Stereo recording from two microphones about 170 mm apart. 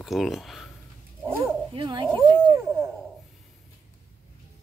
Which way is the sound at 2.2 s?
25° right (ahead or behind).